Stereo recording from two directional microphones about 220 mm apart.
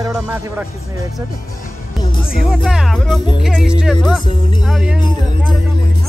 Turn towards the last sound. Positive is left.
turn(degrees=0)  # may be behind; listen again after turning